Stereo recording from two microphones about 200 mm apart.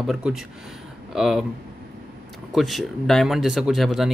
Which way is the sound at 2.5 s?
Centre (ahead or behind).